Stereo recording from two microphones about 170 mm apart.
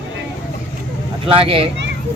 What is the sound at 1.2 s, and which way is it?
Speech, 30° right (ahead or behind).